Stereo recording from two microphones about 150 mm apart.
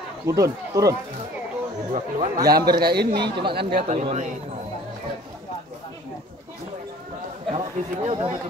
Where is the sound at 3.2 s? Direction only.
35° right (ahead or behind).